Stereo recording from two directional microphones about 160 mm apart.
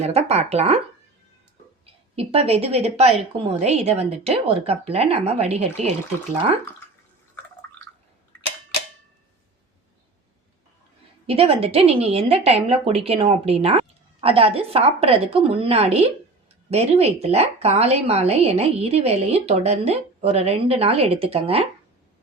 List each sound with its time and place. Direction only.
0.0 s a woman's voice: 40° right (ahead or behind)
2.1 s a woman's voice: 40° right (ahead or behind)
11.3 s a woman's voice: 40° right (ahead or behind)